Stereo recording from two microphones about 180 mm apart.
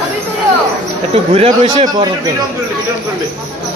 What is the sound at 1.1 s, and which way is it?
Speech, 35° right (ahead or behind).